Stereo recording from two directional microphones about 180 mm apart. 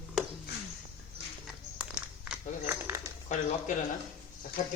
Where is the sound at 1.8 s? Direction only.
5° right (ahead or behind).